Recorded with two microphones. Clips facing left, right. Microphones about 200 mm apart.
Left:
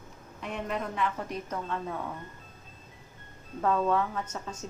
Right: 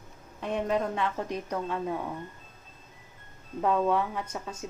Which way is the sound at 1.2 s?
15° right (ahead or behind).